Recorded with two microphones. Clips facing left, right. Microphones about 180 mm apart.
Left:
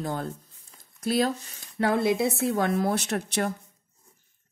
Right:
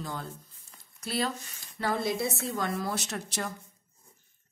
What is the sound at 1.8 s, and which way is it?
A woman's voice, 60° left (ahead or behind).